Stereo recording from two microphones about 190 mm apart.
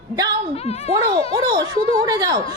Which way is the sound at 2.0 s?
20° right (ahead or behind).